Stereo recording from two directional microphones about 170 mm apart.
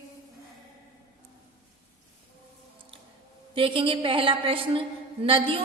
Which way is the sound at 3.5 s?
30° right (ahead or behind).